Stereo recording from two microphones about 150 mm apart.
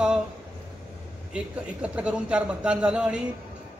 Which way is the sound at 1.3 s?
5° right (ahead or behind).